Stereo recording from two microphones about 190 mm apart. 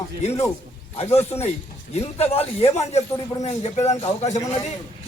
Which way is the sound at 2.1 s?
30° left (ahead or behind).